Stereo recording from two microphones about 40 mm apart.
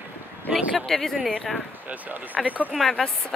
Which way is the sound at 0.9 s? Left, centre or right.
Centre.